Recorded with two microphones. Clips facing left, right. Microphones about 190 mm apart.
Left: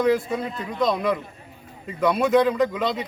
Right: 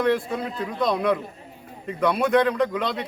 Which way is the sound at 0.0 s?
Centre (ahead or behind).